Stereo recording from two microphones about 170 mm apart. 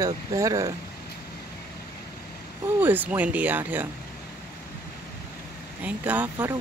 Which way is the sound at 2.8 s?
10° right (ahead or behind).